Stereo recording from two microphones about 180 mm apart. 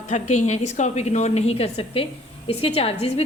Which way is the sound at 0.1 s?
40° left (ahead or behind).